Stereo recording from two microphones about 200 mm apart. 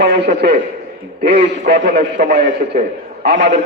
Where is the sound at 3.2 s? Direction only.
55° right (ahead or behind).